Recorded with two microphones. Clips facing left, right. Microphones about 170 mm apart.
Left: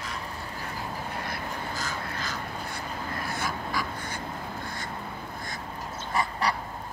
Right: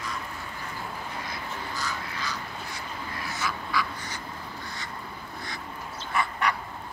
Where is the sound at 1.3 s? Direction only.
50° left (ahead or behind).